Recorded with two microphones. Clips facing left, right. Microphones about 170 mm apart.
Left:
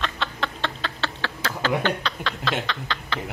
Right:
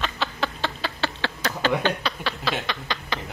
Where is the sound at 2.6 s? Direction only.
15° right (ahead or behind).